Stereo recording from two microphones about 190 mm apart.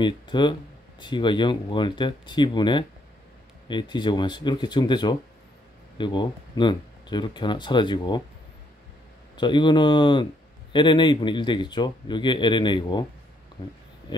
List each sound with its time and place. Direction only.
0.0 s speech: 25° left (ahead or behind)
9.4 s speech: 25° left (ahead or behind)